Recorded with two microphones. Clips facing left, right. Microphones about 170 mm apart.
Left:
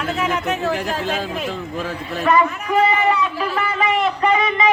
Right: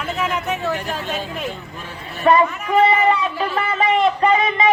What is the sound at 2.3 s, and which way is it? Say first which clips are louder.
Speech: right 2 dB; 25° right (ahead or behind).